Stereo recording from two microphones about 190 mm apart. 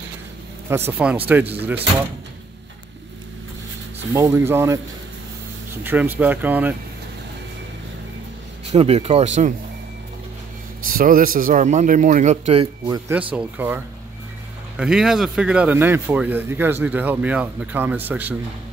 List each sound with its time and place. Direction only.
0.7 s speech: 10° right (ahead or behind)
4.1 s speech: 15° right (ahead or behind)
8.7 s speech: 35° right (ahead or behind)
10.9 s speech: 50° right (ahead or behind)
13.3 s speech: 10° right (ahead or behind)